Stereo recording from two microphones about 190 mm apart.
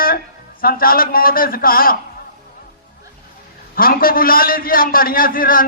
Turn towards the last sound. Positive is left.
turn(degrees=50)  # may be behind; listen again after turning